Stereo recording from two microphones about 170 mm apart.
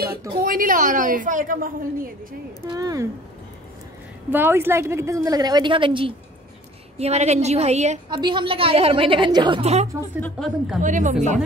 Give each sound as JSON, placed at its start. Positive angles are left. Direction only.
{"t": 0.4, "sound": "a woman's voice", "side_deg": -55}
{"t": 2.7, "sound": "a woman's voice", "side_deg": -20}
{"t": 4.3, "sound": "a woman's voice", "side_deg": -10}
{"t": 8.1, "sound": "a woman's voice", "side_deg": -25}
{"t": 10.2, "sound": "a woman's voice", "side_deg": 0}
{"t": 10.8, "sound": "a woman's voice", "side_deg": -45}